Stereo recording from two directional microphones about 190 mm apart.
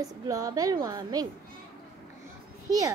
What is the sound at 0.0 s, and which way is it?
A woman's voice, 20° right (ahead or behind).